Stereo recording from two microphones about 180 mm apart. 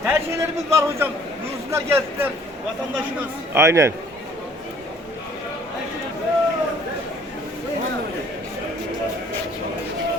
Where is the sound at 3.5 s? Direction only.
15° right (ahead or behind).